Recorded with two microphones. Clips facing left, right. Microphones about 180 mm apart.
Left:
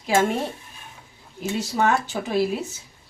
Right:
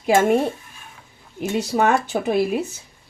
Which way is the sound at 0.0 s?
50° right (ahead or behind).